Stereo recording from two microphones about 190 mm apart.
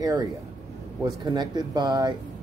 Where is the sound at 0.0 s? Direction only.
20° right (ahead or behind).